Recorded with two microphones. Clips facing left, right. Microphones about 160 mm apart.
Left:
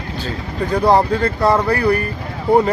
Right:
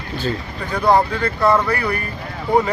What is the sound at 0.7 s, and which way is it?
Speech, 30° left (ahead or behind).